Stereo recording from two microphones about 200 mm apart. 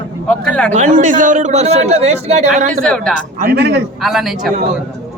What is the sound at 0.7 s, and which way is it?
A man's voice, 40° right (ahead or behind).